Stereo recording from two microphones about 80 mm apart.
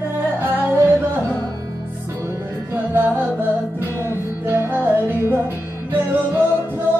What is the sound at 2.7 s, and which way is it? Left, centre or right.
Music, right.